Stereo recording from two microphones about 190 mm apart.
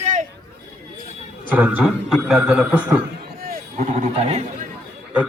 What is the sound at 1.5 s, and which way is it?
A man's voice, 10° right (ahead or behind).